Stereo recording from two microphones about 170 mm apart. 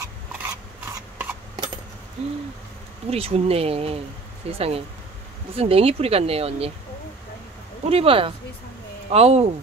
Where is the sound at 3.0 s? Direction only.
35° right (ahead or behind).